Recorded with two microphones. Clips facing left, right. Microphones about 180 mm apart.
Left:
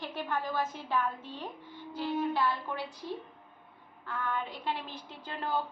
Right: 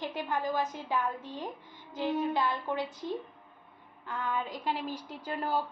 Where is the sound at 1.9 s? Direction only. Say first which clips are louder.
Right 2 dB; 20° right (ahead or behind).